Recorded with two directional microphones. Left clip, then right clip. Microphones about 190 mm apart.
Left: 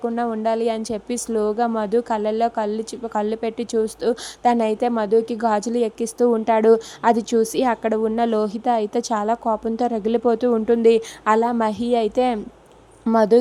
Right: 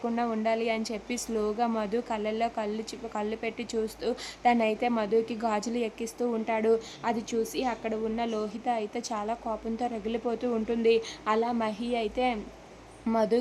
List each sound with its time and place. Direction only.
0.0 s a woman's voice: 25° left (ahead or behind)